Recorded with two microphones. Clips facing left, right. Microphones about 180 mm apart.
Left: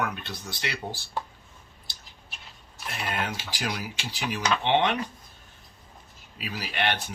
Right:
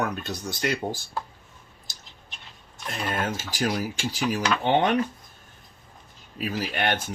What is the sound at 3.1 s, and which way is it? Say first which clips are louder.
Speech: right 3 dB; 45° right (ahead or behind).